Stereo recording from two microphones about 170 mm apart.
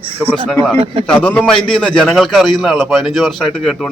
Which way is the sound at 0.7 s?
35° right (ahead or behind).